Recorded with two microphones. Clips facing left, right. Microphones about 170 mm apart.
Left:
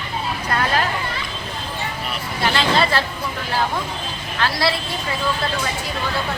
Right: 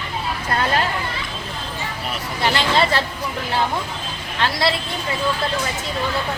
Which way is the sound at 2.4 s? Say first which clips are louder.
Even; 25° right (ahead or behind).